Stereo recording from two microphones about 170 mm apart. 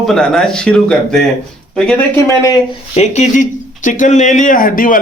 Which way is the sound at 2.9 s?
40° left (ahead or behind).